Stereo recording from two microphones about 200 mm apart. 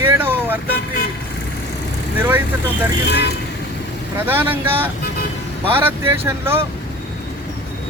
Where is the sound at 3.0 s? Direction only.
55° left (ahead or behind).